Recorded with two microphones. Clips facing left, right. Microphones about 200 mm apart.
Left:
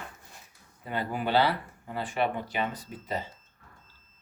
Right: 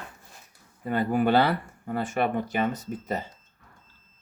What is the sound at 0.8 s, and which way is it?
Speech, 50° right (ahead or behind).